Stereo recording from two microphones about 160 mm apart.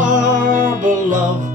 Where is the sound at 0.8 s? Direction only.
55° right (ahead or behind).